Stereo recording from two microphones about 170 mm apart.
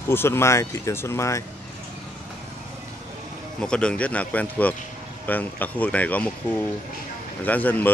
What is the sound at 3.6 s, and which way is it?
Speech, 5° left (ahead or behind).